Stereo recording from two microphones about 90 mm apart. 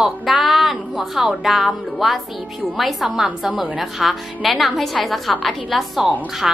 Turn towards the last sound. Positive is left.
turn(degrees=0)  # may be behind; listen again after turning